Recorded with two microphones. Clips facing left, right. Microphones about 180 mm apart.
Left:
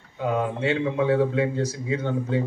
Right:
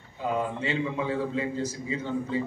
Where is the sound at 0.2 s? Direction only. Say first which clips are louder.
Left 4 dB; 70° left (ahead or behind).